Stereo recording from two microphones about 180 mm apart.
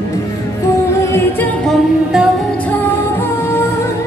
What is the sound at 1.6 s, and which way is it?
Music, centre (ahead or behind).